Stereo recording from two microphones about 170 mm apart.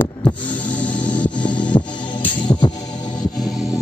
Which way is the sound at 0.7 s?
10° left (ahead or behind).